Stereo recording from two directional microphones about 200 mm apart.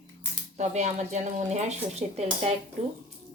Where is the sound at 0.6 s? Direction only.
35° right (ahead or behind).